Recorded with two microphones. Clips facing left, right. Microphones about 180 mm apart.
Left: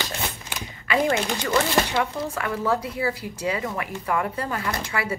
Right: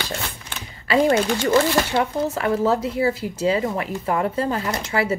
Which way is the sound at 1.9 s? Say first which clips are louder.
Right 4 dB; 25° right (ahead or behind).